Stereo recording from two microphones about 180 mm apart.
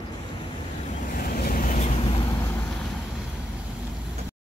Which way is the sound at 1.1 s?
55° left (ahead or behind).